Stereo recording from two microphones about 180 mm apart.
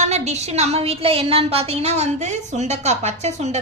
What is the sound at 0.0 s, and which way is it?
A woman's voice, 40° right (ahead or behind).